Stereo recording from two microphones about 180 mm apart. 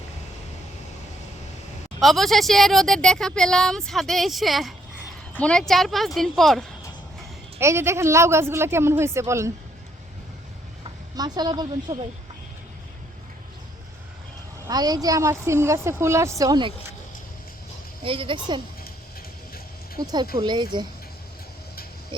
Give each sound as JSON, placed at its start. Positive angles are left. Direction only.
{"t": 2.0, "sound": "a woman's voice", "side_deg": 0}
{"t": 7.6, "sound": "speech", "side_deg": -15}
{"t": 10.8, "sound": "speech", "side_deg": -25}
{"t": 14.7, "sound": "speech", "side_deg": -20}
{"t": 18.0, "sound": "speech", "side_deg": -30}
{"t": 20.0, "sound": "speech", "side_deg": -20}